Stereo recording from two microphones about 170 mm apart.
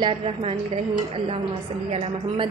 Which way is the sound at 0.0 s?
35° right (ahead or behind).